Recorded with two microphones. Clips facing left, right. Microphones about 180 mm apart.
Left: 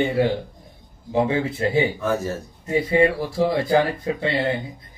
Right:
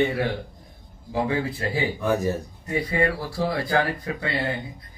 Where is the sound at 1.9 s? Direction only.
15° right (ahead or behind).